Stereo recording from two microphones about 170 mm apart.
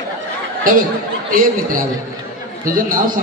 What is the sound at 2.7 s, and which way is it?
Speech, 55° right (ahead or behind).